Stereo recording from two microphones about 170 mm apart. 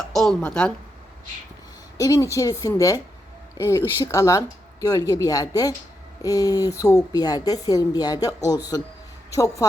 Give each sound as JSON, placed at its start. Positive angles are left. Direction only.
{"t": 0.1, "sound": "speech", "side_deg": 5}
{"t": 2.0, "sound": "speech", "side_deg": 20}